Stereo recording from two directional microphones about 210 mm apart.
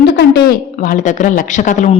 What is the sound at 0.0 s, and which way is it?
A woman's voice, 50° left (ahead or behind).